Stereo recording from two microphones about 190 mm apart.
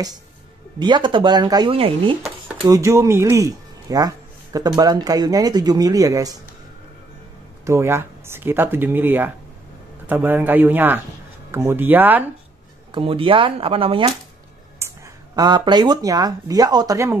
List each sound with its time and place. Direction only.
0.7 s speech: 25° right (ahead or behind)
2.5 s a sound: 30° right (ahead or behind)
2.8 s speech: 15° right (ahead or behind)
7.6 s speech: 15° right (ahead or behind)
12.9 s speech: 25° right (ahead or behind)
14.8 s a sound: 15° right (ahead or behind)
15.3 s speech: 25° right (ahead or behind)